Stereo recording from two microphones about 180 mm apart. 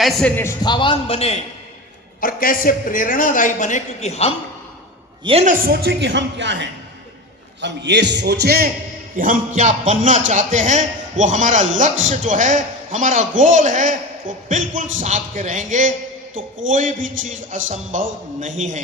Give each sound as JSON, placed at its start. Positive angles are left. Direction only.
{"t": 0.0, "sound": "a man's voice", "side_deg": 5}
{"t": 0.6, "sound": "a man's voice", "side_deg": 25}
{"t": 2.2, "sound": "a man's voice", "side_deg": 50}
{"t": 5.2, "sound": "a man's voice", "side_deg": -35}
{"t": 5.6, "sound": "a man's voice", "side_deg": -60}
{"t": 9.1, "sound": "a man's voice", "side_deg": -50}